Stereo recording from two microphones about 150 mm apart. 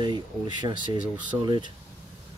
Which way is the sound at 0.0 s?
30° right (ahead or behind).